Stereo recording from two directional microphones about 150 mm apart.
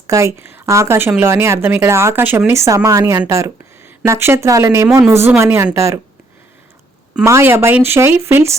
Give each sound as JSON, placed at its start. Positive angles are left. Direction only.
{"t": 0.1, "sound": "speech", "side_deg": -20}
{"t": 7.3, "sound": "speech", "side_deg": -20}